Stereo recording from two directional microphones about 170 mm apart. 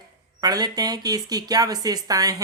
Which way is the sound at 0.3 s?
25° right (ahead or behind).